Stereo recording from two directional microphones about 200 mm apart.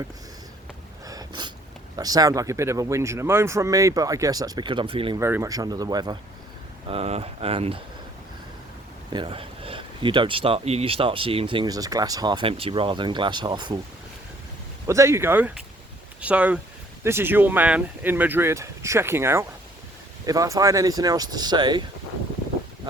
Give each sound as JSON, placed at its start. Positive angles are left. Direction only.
{"t": 1.0, "sound": "a sound", "side_deg": -20}
{"t": 2.0, "sound": "speech", "side_deg": -20}
{"t": 5.2, "sound": "speech", "side_deg": -15}
{"t": 6.8, "sound": "speech", "side_deg": -30}
{"t": 9.1, "sound": "speech", "side_deg": -25}
{"t": 14.8, "sound": "speech", "side_deg": -15}